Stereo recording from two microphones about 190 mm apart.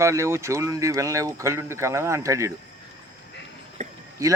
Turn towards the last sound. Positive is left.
turn(degrees=-15)  # may be behind; listen again after turning